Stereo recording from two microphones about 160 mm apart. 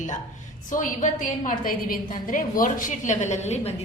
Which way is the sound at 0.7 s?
55° left (ahead or behind).